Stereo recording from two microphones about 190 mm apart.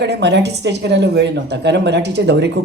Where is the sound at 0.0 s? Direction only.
65° right (ahead or behind).